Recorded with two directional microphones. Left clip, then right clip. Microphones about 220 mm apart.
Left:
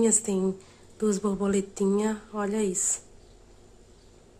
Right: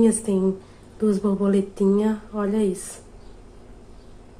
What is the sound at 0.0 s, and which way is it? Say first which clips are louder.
Speech: right 5 dB; 25° left (ahead or behind).